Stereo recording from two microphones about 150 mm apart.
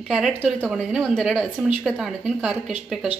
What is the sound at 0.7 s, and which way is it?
A woman's voice, centre (ahead or behind).